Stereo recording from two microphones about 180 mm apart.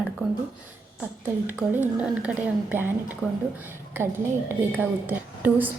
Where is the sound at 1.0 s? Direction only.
10° right (ahead or behind).